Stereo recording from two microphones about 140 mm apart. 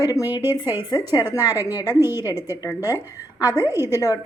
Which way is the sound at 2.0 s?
15° right (ahead or behind).